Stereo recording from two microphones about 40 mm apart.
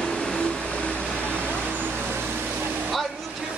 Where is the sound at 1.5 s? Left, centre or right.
Right.